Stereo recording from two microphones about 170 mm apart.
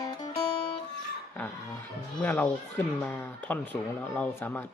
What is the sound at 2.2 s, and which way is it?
Speech, 10° left (ahead or behind).